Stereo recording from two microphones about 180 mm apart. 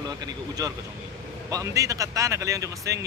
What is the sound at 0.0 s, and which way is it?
Speech, 20° right (ahead or behind).